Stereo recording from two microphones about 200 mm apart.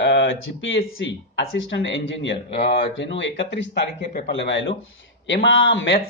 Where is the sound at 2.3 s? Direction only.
30° left (ahead or behind).